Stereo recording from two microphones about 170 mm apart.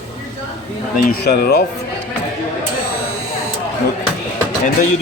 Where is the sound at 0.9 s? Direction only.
65° left (ahead or behind).